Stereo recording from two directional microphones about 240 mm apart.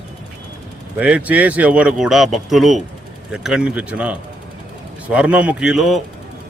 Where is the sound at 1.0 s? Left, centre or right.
Centre.